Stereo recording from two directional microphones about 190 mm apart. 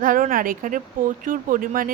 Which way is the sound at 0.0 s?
45° right (ahead or behind).